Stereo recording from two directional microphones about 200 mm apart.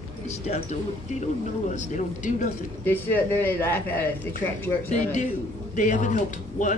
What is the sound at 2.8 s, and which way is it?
Speech, 10° left (ahead or behind).